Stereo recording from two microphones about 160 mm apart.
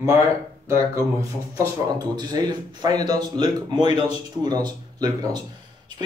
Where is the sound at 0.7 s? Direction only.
20° right (ahead or behind).